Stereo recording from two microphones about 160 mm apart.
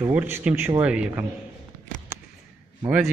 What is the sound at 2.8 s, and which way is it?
Speech, 10° right (ahead or behind).